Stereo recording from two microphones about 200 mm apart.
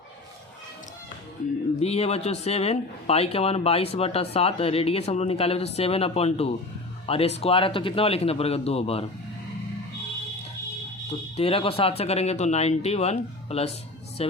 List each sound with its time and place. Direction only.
1.8 s a man's voice: 30° left (ahead or behind)
11.3 s speech: 30° left (ahead or behind)